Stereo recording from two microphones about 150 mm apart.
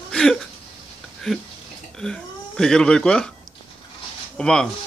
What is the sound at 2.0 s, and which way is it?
Speech, 5° left (ahead or behind).